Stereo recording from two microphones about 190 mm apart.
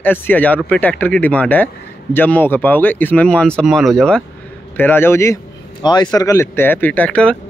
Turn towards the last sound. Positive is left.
turn(degrees=5)  # may be behind; listen again after turning